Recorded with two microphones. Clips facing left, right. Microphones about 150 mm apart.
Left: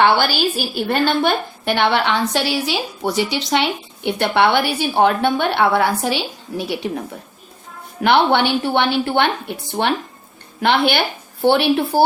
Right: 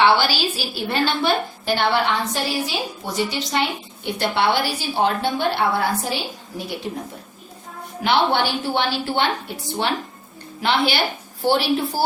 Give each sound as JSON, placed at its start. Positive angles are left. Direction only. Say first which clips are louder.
{"t": 0.0, "sound": "a woman's voice", "louder": "left 2 dB", "side_deg": 50}
{"t": 8.0, "sound": "a woman's voice", "louder": "left 4 dB", "side_deg": 65}